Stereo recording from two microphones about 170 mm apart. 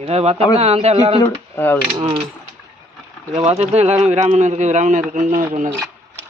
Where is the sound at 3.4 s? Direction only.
40° right (ahead or behind).